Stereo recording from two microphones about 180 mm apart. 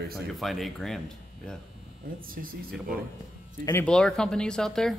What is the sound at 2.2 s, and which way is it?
Speech, 50° right (ahead or behind).